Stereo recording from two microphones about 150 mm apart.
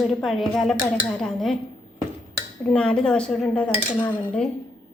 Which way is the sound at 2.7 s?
5° left (ahead or behind).